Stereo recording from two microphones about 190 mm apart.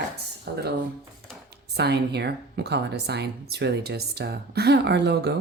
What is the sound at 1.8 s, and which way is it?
Speech, 60° right (ahead or behind).